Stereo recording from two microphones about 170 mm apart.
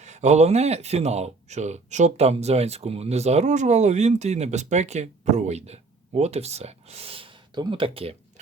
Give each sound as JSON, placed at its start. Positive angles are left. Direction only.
{"t": 0.0, "sound": "speech", "side_deg": -40}